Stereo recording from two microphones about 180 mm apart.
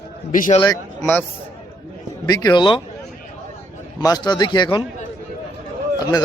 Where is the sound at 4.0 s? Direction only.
20° left (ahead or behind).